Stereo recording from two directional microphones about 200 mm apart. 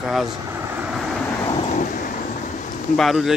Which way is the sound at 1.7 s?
40° left (ahead or behind).